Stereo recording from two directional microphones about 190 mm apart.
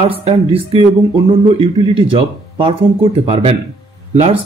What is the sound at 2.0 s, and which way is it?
Speech, 30° right (ahead or behind).